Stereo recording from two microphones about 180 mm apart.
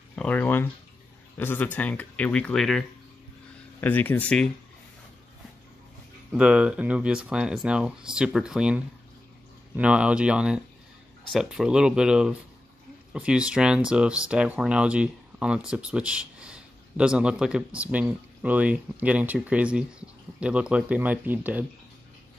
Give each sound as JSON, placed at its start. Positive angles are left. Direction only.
{"t": 0.1, "sound": "speech", "side_deg": 5}
{"t": 3.8, "sound": "speech", "side_deg": 10}
{"t": 6.3, "sound": "speech", "side_deg": -5}